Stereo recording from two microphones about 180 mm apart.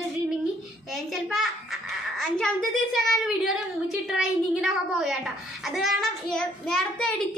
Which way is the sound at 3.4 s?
Centre (ahead or behind).